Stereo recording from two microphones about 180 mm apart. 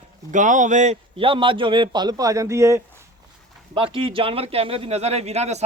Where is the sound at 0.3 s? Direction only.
45° right (ahead or behind); by 2.8 s 15° right (ahead or behind).